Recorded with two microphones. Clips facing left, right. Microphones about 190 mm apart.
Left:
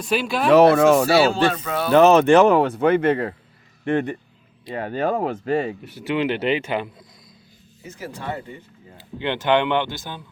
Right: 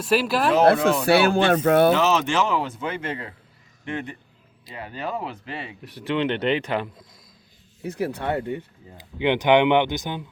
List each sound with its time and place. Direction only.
0.0 s speech: 5° right (ahead or behind)
1.0 s speech: 60° right (ahead or behind)
1.9 s speech: 55° left (ahead or behind)
5.8 s speech: 5° left (ahead or behind)
7.8 s speech: 65° right (ahead or behind)
9.0 s a man's voice: 15° right (ahead or behind)